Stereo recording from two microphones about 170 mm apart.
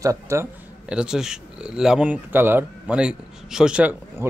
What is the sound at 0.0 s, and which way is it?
Speech, 15° right (ahead or behind).